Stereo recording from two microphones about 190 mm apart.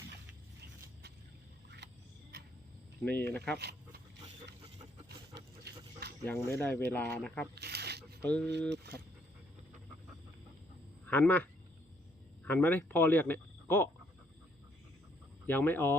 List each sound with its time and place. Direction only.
3.0 s speech: 10° left (ahead or behind)
3.6 s a sound: 60° right (ahead or behind)
5.6 s a sound: 60° right (ahead or behind)
6.2 s speech: 10° left (ahead or behind)
7.5 s shuffling cards: 60° right (ahead or behind)
8.2 s speech: 5° left (ahead or behind)
8.7 s speech: 60° right (ahead or behind)
11.0 s speech: 10° left (ahead or behind)
12.5 s speech: 10° left (ahead or behind)
15.4 s speech: 10° left (ahead or behind)